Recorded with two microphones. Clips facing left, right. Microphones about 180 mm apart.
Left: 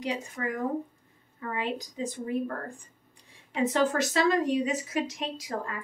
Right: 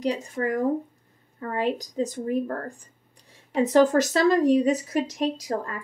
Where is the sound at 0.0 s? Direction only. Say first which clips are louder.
Right 6 dB; 40° right (ahead or behind).